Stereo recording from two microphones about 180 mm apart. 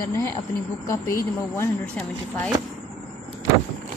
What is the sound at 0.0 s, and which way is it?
A woman's voice, 15° left (ahead or behind).